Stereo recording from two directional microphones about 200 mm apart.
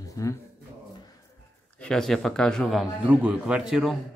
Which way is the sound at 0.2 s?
15° left (ahead or behind).